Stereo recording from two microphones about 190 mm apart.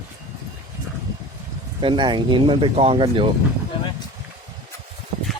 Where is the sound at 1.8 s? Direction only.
25° right (ahead or behind).